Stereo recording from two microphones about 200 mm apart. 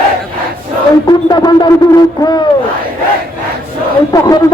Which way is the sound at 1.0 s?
20° left (ahead or behind).